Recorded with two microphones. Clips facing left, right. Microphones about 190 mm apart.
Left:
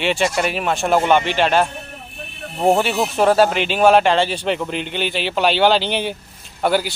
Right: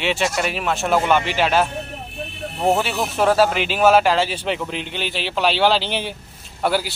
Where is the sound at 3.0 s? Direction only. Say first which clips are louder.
Left 1 dB; centre (ahead or behind).